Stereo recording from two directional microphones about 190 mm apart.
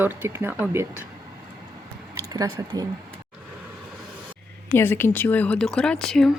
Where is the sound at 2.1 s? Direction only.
20° right (ahead or behind).